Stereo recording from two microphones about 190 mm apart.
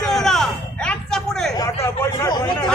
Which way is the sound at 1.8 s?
15° left (ahead or behind).